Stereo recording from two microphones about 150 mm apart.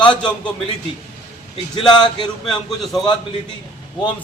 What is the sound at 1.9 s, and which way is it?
Speech, 30° left (ahead or behind).